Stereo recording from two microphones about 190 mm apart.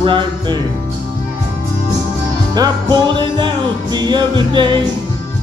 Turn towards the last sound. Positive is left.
turn(degrees=-25)  # may be behind; listen again after turning